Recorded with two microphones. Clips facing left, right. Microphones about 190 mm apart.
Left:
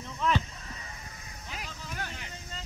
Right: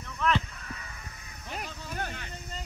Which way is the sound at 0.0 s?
20° left (ahead or behind).